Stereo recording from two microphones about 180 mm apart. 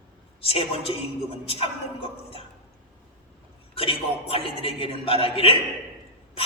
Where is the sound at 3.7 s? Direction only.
30° left (ahead or behind).